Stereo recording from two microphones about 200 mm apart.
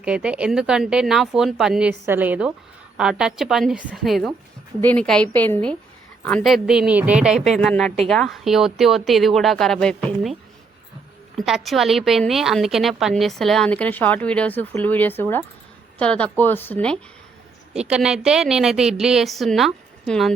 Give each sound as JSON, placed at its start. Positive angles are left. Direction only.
{"t": 0.0, "sound": "a woman's voice", "side_deg": -5}
{"t": 11.3, "sound": "a woman's voice", "side_deg": 0}
{"t": 17.7, "sound": "a woman's voice", "side_deg": -5}